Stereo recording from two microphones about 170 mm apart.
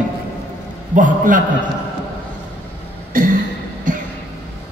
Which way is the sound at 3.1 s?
55° right (ahead or behind).